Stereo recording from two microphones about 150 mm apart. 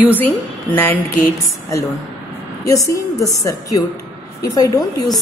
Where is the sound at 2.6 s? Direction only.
20° left (ahead or behind).